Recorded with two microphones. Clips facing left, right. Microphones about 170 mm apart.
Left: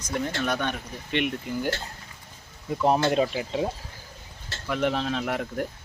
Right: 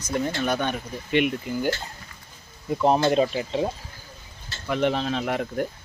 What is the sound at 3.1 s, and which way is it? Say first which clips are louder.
Speech: right 2 dB; 5° left (ahead or behind).